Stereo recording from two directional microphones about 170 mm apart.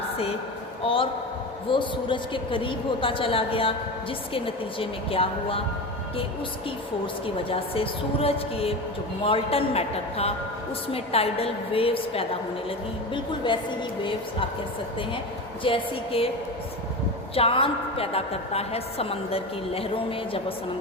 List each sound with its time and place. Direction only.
0.8 s a woman's voice: 30° left (ahead or behind)
7.5 s a woman's voice: 35° left (ahead or behind)
13.4 s a woman's voice: 30° left (ahead or behind)
15.6 s a woman's voice: 35° left (ahead or behind)
17.3 s a woman's voice: 35° left (ahead or behind)